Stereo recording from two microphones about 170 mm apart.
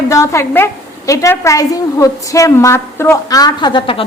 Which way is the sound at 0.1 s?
15° left (ahead or behind).